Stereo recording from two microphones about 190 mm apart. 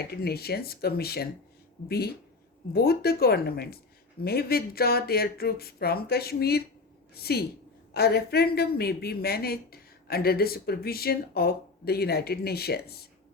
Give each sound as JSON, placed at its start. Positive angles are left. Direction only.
{"t": 0.0, "sound": "a woman's voice", "side_deg": 55}